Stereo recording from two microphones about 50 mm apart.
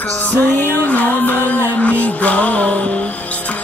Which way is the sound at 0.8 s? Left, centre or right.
Left.